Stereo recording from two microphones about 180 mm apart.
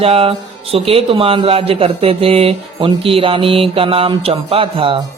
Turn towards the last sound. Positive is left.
turn(degrees=-30)  # may be behind; listen again after turning